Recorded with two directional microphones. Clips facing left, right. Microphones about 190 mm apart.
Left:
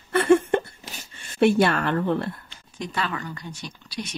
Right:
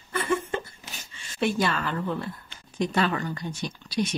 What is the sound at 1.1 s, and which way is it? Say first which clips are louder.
Speech: left 7 dB; 55° left (ahead or behind).